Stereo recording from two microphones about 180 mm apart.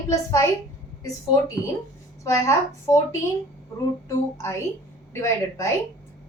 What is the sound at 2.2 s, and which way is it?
A woman's voice, 15° left (ahead or behind).